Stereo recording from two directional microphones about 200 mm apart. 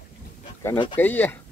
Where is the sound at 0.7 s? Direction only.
25° left (ahead or behind).